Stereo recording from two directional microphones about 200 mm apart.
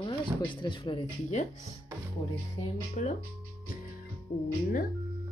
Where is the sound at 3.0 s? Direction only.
40° left (ahead or behind).